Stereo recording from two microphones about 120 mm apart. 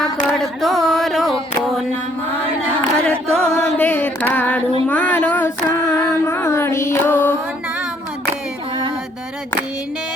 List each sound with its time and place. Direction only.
0.3 s chant: centre (ahead or behind)
3.1 s chant: 5° left (ahead or behind)
3.8 s female singing: 15° left (ahead or behind)
4.9 s a sound: 15° left (ahead or behind)